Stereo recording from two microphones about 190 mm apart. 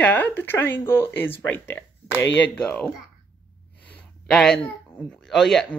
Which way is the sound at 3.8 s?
5° left (ahead or behind).